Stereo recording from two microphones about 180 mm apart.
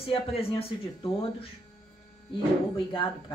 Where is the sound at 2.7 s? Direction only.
30° left (ahead or behind).